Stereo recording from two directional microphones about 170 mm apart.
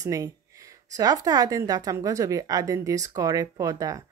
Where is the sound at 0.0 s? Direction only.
20° right (ahead or behind).